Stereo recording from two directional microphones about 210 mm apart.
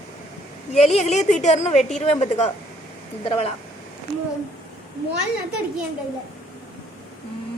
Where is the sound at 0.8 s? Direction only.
30° left (ahead or behind).